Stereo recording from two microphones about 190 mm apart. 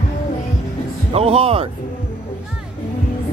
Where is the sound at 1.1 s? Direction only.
30° right (ahead or behind).